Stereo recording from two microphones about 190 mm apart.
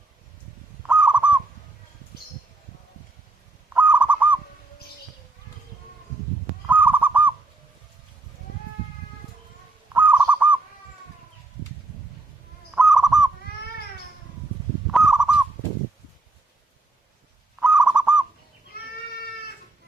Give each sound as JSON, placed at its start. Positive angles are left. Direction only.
{"t": 0.9, "sound": "fowl", "side_deg": -5}
{"t": 3.8, "sound": "bird", "side_deg": -10}
{"t": 6.7, "sound": "fowl", "side_deg": -10}
{"t": 9.9, "sound": "bird", "side_deg": -10}
{"t": 12.7, "sound": "fowl", "side_deg": 0}
{"t": 14.9, "sound": "fowl", "side_deg": 0}
{"t": 17.6, "sound": "bird", "side_deg": -5}
{"t": 18.7, "sound": "goat", "side_deg": 50}